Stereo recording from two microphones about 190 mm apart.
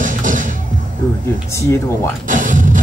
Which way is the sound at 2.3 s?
40° right (ahead or behind).